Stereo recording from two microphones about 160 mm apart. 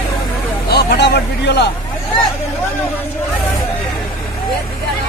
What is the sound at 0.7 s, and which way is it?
Vehicle, 85° left.